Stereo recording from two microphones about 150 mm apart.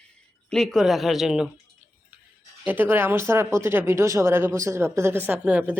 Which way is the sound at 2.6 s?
15° right (ahead or behind).